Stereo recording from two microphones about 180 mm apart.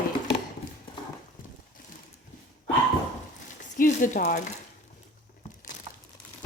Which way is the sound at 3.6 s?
45° left (ahead or behind).